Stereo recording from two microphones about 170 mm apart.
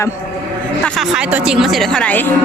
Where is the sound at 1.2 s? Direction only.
5° right (ahead or behind).